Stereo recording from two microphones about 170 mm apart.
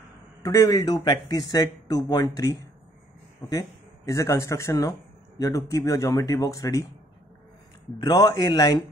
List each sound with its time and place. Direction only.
0.4 s speech: 20° left (ahead or behind)
8.0 s speech: 25° left (ahead or behind)